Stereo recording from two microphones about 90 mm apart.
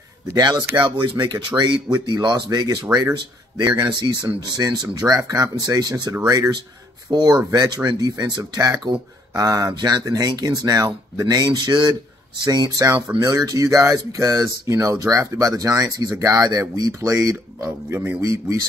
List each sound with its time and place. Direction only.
0.3 s speech: 50° right (ahead or behind)
0.7 s speech: 65° right (ahead or behind)
12.4 s speech: 45° right (ahead or behind)
13.1 s speech: 20° right (ahead or behind)
13.5 s speech: 40° right (ahead or behind)
17.6 s speech: 25° right (ahead or behind)
18.2 s speech: 40° right (ahead or behind)